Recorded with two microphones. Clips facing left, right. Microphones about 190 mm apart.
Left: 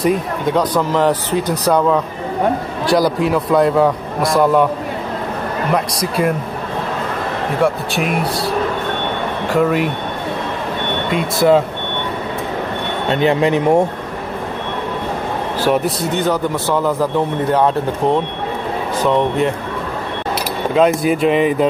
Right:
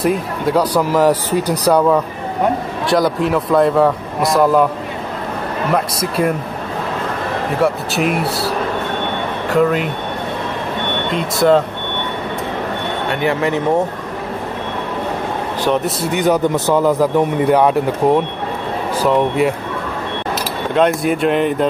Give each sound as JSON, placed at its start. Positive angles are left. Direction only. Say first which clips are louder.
{"t": 0.0, "sound": "speech", "louder": "even", "side_deg": 0}
{"t": 2.9, "sound": "a man's voice", "louder": "left 1 dB", "side_deg": 0}
{"t": 5.7, "sound": "a man's voice", "louder": "right 1 dB", "side_deg": 0}
{"t": 7.6, "sound": "a man's voice", "louder": "right 1 dB", "side_deg": 0}
{"t": 9.5, "sound": "a man's voice", "louder": "right 1 dB", "side_deg": 0}
{"t": 11.1, "sound": "a man's voice", "louder": "even", "side_deg": 5}
{"t": 13.1, "sound": "speech", "louder": "left 4 dB", "side_deg": 20}
{"t": 16.1, "sound": "speech", "louder": "right 5 dB", "side_deg": -15}
{"t": 20.7, "sound": "a man's voice", "louder": "left 1 dB", "side_deg": 0}